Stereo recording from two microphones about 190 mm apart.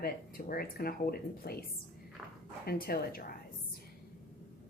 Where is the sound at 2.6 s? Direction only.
50° left (ahead or behind).